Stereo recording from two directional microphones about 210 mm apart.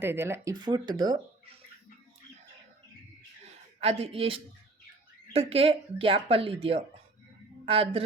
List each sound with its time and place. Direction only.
0.0 s speech: 10° right (ahead or behind)
3.8 s a woman's voice: 30° right (ahead or behind)